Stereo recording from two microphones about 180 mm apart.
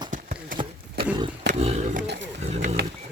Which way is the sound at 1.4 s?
40° right (ahead or behind).